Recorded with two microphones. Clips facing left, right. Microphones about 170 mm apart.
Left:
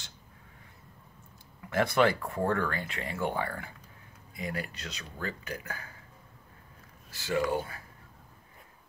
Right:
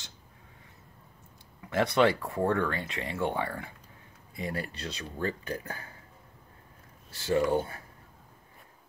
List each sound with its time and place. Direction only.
1.7 s speech: 20° right (ahead or behind)
4.4 s speech: 30° right (ahead or behind)
7.1 s speech: 30° right (ahead or behind)